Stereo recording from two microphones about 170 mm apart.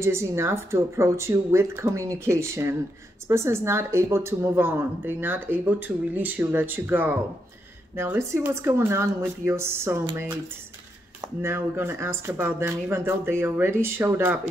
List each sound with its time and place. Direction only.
0.0 s a woman's voice: 15° right (ahead or behind)